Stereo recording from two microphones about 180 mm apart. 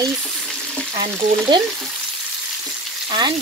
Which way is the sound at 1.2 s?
25° right (ahead or behind).